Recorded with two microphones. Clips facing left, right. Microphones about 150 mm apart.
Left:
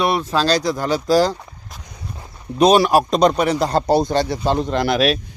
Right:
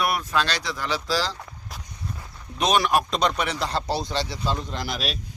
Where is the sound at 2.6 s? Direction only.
35° left (ahead or behind).